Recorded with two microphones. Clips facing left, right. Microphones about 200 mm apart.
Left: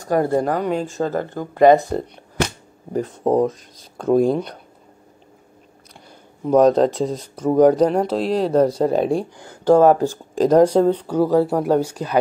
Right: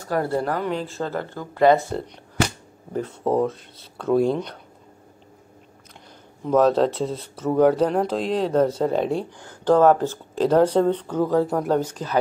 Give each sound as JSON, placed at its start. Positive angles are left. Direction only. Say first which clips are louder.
{"t": 0.1, "sound": "speech", "louder": "left 5 dB", "side_deg": 20}
{"t": 0.9, "sound": "speech", "louder": "left 5 dB", "side_deg": 45}
{"t": 1.5, "sound": "speech", "louder": "left 4 dB", "side_deg": 15}
{"t": 3.3, "sound": "speech", "louder": "left 4 dB", "side_deg": 15}
{"t": 6.4, "sound": "speech", "louder": "left 4 dB", "side_deg": 15}